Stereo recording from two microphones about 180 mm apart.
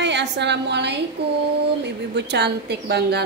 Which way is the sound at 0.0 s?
75° right (ahead or behind).